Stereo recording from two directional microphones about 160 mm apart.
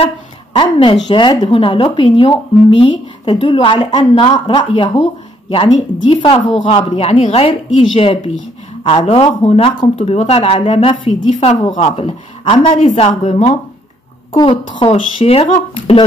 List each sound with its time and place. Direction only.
0.0 s a sound: 35° left (ahead or behind)
1.0 s a woman's voice: 30° left (ahead or behind); by 13.6 s 45° left (ahead or behind)
14.3 s speech: 30° left (ahead or behind)